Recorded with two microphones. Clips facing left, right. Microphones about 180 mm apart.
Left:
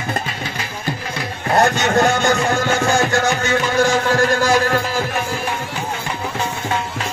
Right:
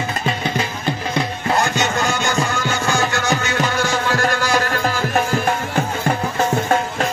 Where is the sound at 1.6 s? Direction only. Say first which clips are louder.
Left 8 dB; 55° left (ahead or behind).